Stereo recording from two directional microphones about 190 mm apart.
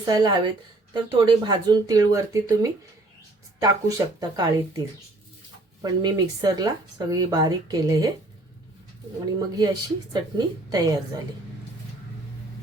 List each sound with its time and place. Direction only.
0.0 s speech: 20° right (ahead or behind)
9.6 s speech: 20° right (ahead or behind)